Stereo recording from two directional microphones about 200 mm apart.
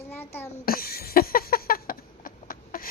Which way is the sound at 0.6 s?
45° left (ahead or behind).